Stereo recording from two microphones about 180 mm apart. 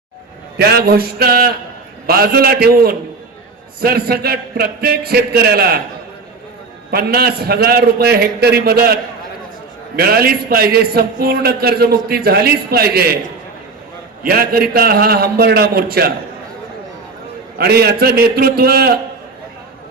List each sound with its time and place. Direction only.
0.6 s a man's voice: 60° right (ahead or behind)
6.9 s a man's voice: 60° right (ahead or behind)
14.3 s a man's voice: 55° right (ahead or behind)
17.6 s a man's voice: 60° right (ahead or behind)